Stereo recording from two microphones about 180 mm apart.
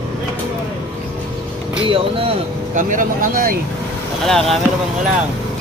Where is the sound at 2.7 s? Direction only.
45° right (ahead or behind).